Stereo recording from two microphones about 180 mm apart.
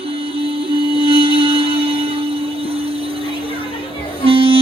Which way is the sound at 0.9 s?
30° right (ahead or behind).